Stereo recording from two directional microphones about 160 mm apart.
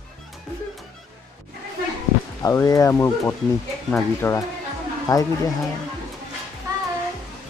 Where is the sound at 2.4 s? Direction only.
20° left (ahead or behind).